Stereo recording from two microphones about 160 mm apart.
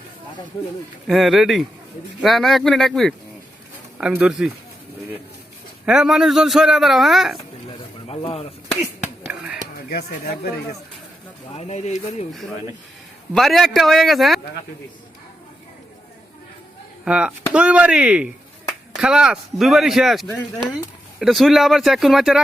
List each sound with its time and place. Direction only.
1.0 s a man's voice: centre (ahead or behind)
5.8 s a man's voice: 5° right (ahead or behind)
8.0 s speech: 35° left (ahead or behind)
8.7 s finger snapping: 5° right (ahead or behind)
9.9 s speech: 70° left (ahead or behind)
11.5 s speech: 45° left (ahead or behind)
13.3 s a man's voice: centre (ahead or behind)
17.1 s a man's voice: 5° right (ahead or behind)